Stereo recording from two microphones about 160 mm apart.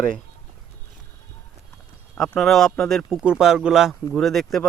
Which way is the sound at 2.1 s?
5° left (ahead or behind).